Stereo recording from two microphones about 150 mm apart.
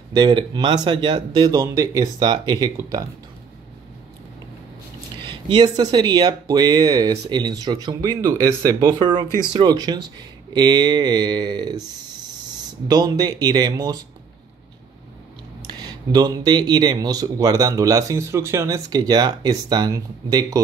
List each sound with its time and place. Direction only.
0.1 s speech: 30° right (ahead or behind)
5.1 s speech: 35° right (ahead or behind)
12.8 s speech: 25° right (ahead or behind)
15.7 s speech: 25° right (ahead or behind)